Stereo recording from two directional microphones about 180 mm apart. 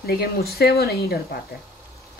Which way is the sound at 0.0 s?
60° left (ahead or behind).